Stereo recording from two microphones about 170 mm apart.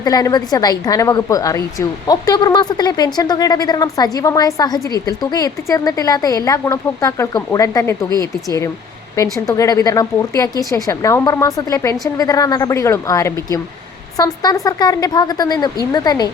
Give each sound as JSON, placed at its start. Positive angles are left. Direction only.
{"t": 0.0, "sound": "a woman's voice", "side_deg": 20}